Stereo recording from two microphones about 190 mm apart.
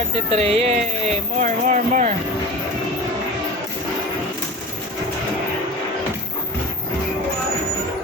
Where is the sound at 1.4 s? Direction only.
40° right (ahead or behind).